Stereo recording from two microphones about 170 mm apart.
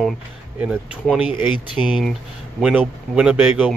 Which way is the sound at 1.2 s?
30° left (ahead or behind).